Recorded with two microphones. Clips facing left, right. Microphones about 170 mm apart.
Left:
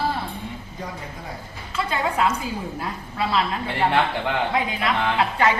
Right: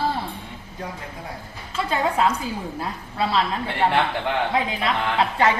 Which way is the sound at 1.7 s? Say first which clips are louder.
Right 2 dB; 35° right (ahead or behind).